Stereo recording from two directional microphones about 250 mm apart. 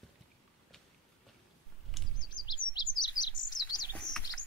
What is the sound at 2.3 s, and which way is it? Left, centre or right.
Chirp, centre.